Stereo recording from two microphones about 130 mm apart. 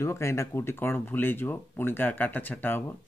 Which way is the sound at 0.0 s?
20° left (ahead or behind).